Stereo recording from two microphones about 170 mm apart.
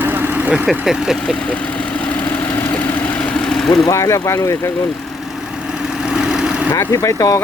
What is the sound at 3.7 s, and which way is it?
Speech, 20° left (ahead or behind).